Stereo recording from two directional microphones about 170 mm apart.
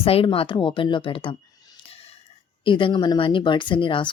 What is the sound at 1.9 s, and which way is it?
Music, 35° left (ahead or behind).